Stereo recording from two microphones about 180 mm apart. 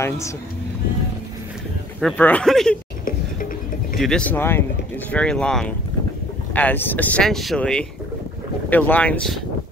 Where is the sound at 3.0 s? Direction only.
50° left (ahead or behind).